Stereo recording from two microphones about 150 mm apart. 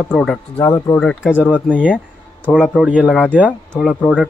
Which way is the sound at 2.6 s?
10° right (ahead or behind).